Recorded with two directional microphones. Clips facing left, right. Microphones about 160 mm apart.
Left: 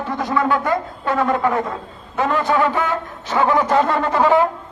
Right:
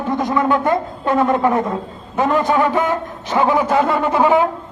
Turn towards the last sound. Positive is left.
turn(degrees=-10)  # may be behind; listen again after turning